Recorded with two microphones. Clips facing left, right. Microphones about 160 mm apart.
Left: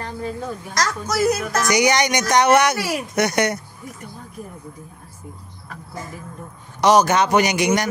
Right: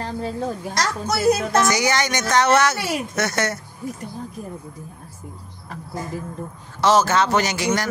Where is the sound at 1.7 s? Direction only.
15° left (ahead or behind).